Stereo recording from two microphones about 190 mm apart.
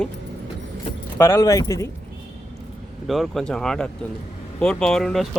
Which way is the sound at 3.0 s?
Centre (ahead or behind).